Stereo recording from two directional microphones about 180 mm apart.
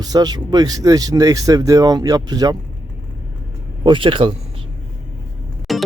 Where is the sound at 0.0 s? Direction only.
20° right (ahead or behind).